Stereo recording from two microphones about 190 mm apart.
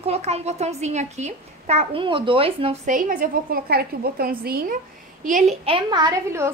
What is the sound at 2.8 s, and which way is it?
A woman's voice, 45° right (ahead or behind).